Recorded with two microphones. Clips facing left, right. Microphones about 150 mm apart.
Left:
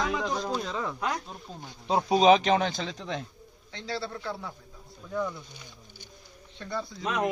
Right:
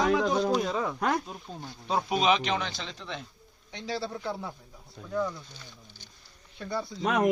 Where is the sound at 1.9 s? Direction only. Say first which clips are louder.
Left 4 dB; 25° left (ahead or behind).